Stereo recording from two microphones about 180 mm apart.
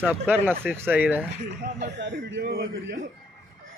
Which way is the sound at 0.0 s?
10° right (ahead or behind).